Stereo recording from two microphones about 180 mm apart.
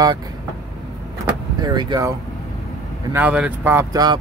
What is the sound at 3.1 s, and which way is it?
Speech, 10° right (ahead or behind).